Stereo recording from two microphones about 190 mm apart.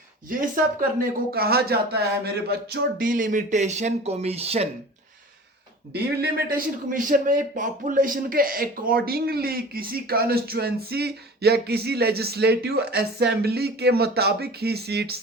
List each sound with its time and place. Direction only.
0.3 s a man's voice: 45° right (ahead or behind)
5.9 s a man's voice: 50° right (ahead or behind)